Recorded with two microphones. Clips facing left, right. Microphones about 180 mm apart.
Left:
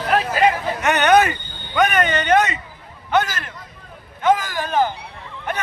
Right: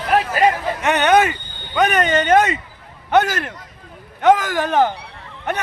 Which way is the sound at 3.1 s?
60° right (ahead or behind).